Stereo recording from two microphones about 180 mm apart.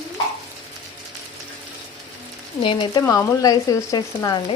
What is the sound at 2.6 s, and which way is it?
Speech, 30° left (ahead or behind).